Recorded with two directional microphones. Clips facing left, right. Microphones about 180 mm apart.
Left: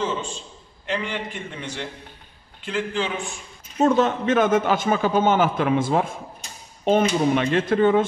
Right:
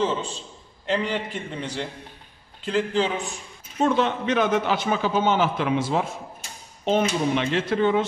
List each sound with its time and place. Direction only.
0.0 s a man's voice: 35° right (ahead or behind)
3.8 s a man's voice: 45° left (ahead or behind)